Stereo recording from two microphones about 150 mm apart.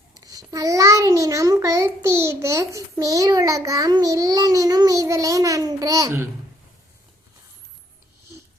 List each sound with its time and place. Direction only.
0.3 s a child's voice: 25° right (ahead or behind)